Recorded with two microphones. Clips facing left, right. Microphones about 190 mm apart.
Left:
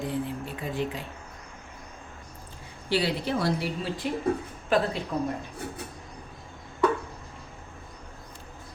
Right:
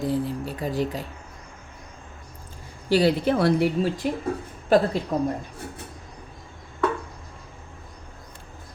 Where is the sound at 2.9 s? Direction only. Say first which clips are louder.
Right 7 dB; 45° right (ahead or behind); by 4.1 s 60° right (ahead or behind).